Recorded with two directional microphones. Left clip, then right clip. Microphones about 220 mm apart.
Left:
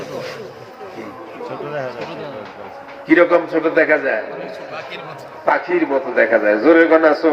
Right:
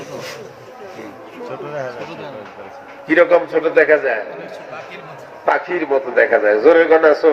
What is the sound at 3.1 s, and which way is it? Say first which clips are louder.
A man's voice: right 1 dB; 50° right (ahead or behind).